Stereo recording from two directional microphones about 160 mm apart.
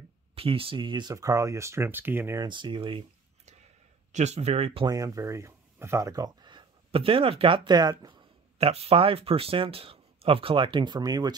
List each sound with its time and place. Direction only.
0.4 s speech: 35° right (ahead or behind); by 2.4 s 15° right (ahead or behind)
2.4 s speech: 30° right (ahead or behind)
4.1 s speech: 45° right (ahead or behind)
4.8 s speech: 20° right (ahead or behind)
8.5 s speech: 40° right (ahead or behind)